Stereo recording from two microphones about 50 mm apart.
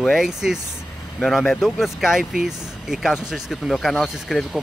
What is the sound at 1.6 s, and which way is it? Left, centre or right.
Speech, centre.